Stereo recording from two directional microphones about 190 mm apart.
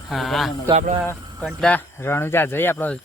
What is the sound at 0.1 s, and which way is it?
Speech, centre (ahead or behind).